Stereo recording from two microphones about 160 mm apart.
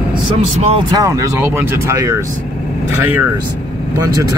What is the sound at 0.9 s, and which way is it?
Speech, 20° right (ahead or behind).